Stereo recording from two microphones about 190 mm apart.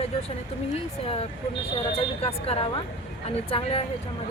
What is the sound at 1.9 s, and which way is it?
Speech, 30° left (ahead or behind).